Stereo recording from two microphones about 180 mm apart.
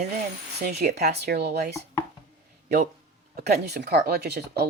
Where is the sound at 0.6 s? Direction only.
65° right (ahead or behind).